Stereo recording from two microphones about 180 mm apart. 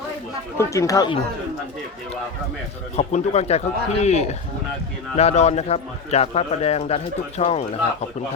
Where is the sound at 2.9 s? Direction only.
35° left (ahead or behind).